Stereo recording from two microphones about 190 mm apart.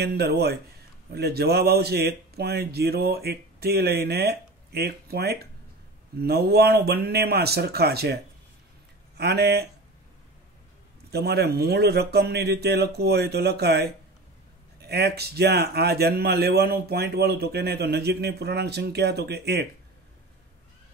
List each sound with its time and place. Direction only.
0.0 s speech: 60° right (ahead or behind)
11.1 s speech: 60° right (ahead or behind)